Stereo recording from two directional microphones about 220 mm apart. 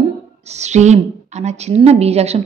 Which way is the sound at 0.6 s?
30° right (ahead or behind).